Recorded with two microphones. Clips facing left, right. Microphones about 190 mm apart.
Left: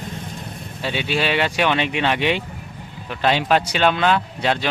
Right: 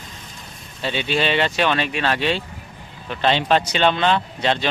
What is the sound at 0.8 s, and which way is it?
Speech, 10° left (ahead or behind).